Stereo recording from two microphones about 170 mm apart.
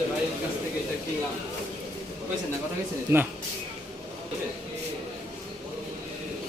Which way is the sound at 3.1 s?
15° right (ahead or behind).